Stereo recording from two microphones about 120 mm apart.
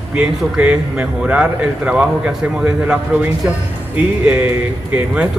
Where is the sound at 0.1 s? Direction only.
10° right (ahead or behind).